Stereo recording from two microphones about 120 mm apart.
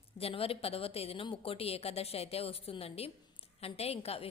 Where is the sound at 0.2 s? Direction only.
55° left (ahead or behind).